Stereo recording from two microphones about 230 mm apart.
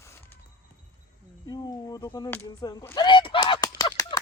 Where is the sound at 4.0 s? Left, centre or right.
Centre.